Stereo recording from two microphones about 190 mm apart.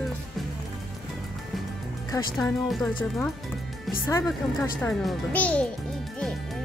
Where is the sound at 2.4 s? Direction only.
Centre (ahead or behind).